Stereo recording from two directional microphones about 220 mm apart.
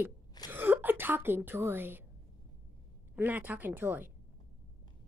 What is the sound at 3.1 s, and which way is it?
Speech, 5° right (ahead or behind).